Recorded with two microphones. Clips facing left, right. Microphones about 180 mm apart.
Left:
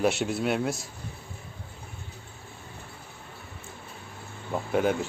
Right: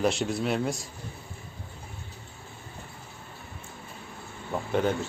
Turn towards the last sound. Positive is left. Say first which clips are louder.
# left 1 dB
turn(degrees=5)  # may be behind; listen again after turning